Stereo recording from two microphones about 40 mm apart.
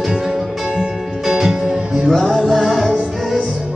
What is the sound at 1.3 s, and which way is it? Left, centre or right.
Music, centre.